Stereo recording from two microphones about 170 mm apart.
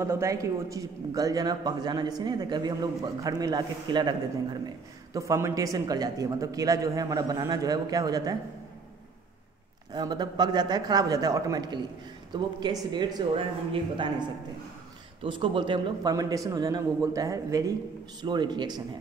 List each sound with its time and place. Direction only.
0.0 s a man's voice: 15° right (ahead or behind)
9.9 s a man's voice: 25° right (ahead or behind)
15.2 s a man's voice: 30° right (ahead or behind)